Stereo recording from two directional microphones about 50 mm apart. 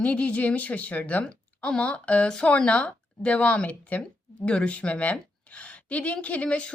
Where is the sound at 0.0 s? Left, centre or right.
Left.